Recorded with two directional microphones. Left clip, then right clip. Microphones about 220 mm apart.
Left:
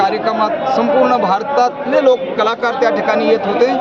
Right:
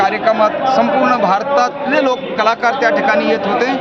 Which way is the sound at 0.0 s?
5° right (ahead or behind).